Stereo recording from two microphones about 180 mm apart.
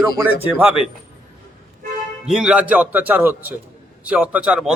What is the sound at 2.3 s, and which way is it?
Speech, 5° right (ahead or behind).